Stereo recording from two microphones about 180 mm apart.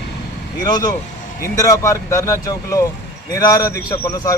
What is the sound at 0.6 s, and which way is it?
A man's voice, 20° left (ahead or behind).